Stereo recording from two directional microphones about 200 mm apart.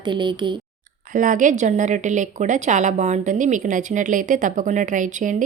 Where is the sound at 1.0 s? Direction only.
40° right (ahead or behind).